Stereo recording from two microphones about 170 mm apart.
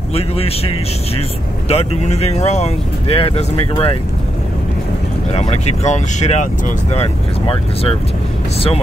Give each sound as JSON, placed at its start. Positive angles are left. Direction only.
{"t": 1.7, "sound": "speech", "side_deg": 40}
{"t": 5.3, "sound": "speech", "side_deg": 40}